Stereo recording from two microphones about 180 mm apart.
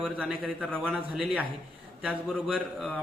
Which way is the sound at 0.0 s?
5° right (ahead or behind).